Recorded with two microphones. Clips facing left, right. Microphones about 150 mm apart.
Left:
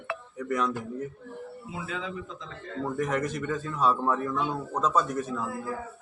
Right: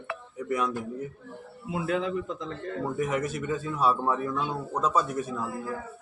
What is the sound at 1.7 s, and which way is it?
Speech, 60° right (ahead or behind).